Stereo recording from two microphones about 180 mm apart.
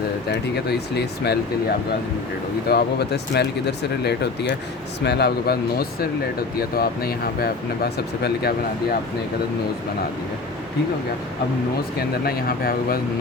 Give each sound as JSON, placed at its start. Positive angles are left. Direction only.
{"t": 0.3, "sound": "speech", "side_deg": 65}
{"t": 2.6, "sound": "speech", "side_deg": 65}
{"t": 6.6, "sound": "speech", "side_deg": 55}
{"t": 11.9, "sound": "speech", "side_deg": 60}